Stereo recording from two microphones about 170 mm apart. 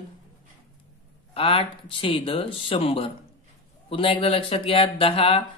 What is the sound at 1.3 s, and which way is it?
Speech, 30° left (ahead or behind).